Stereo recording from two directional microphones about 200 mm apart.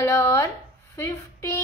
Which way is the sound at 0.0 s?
15° left (ahead or behind).